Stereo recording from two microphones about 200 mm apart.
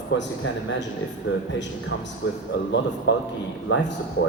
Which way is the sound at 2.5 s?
60° left (ahead or behind).